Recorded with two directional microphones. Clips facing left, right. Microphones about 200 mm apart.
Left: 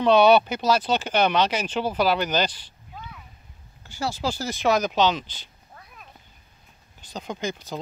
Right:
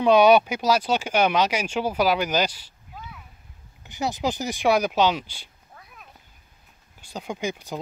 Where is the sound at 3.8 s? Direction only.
20° right (ahead or behind).